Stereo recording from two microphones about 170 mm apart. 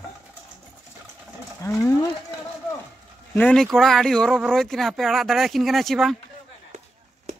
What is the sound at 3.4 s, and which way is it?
Speech, 5° left (ahead or behind).